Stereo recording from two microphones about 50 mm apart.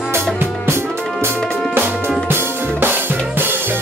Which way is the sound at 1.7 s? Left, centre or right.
Right.